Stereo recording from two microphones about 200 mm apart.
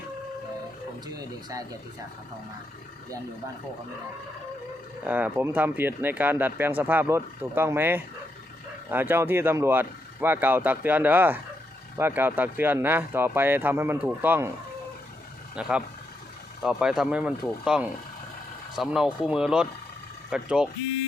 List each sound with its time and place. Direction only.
1.0 s speech: 20° right (ahead or behind)
5.0 s speech: 5° right (ahead or behind)
15.5 s speech: 5° right (ahead or behind)